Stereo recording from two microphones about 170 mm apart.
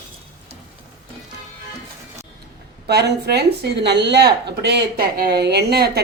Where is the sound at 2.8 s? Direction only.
75° right (ahead or behind).